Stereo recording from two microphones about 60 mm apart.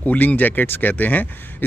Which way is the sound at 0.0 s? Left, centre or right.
Left.